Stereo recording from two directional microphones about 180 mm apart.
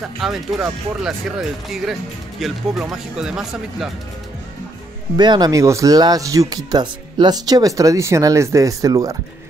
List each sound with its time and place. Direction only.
0.2 s speech: centre (ahead or behind)
5.1 s speech: 25° right (ahead or behind)